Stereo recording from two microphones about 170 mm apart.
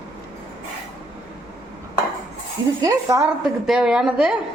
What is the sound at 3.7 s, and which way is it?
Speech, 5° right (ahead or behind).